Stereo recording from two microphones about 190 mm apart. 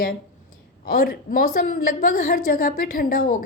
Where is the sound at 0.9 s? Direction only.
50° left (ahead or behind).